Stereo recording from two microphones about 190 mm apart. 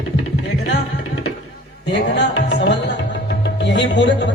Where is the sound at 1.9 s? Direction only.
65° left (ahead or behind).